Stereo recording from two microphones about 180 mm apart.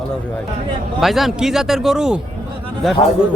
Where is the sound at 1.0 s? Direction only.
Centre (ahead or behind).